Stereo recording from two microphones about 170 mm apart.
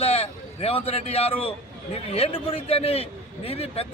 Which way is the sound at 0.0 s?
35° left (ahead or behind).